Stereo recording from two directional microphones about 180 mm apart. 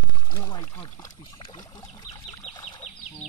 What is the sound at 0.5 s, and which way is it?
Pour, 20° left (ahead or behind).